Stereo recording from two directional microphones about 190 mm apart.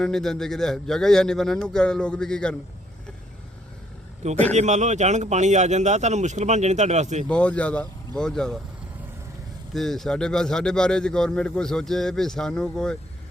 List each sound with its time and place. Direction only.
0.0 s a man's voice: centre (ahead or behind)
4.2 s a man's voice: 35° right (ahead or behind)
7.3 s a man's voice: 5° left (ahead or behind)
9.7 s a man's voice: centre (ahead or behind)